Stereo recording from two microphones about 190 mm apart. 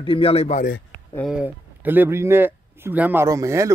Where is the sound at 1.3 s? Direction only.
10° right (ahead or behind).